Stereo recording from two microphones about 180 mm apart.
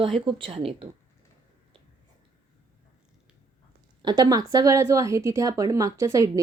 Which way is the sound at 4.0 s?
25° right (ahead or behind).